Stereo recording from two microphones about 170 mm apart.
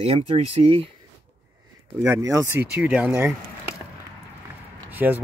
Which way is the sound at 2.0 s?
20° right (ahead or behind).